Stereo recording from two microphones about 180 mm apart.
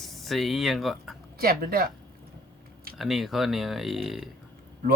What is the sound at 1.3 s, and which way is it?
Speech, 55° right (ahead or behind).